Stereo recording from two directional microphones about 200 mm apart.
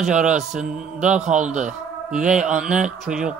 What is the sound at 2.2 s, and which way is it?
Speech, 5° right (ahead or behind).